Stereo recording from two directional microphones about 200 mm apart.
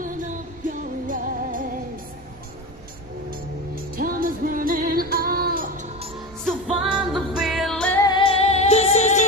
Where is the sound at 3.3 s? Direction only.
45° right (ahead or behind).